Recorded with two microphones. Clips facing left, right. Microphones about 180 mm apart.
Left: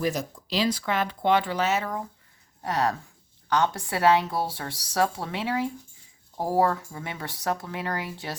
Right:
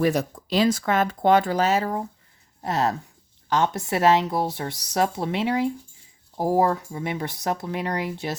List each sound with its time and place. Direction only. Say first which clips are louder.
0.0 s speech: right 6 dB; 60° right (ahead or behind); by 8.4 s 20° right (ahead or behind)